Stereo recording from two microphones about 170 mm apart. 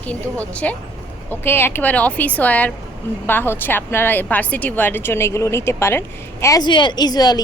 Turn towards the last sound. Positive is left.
turn(degrees=25)  # may be behind; listen again after turning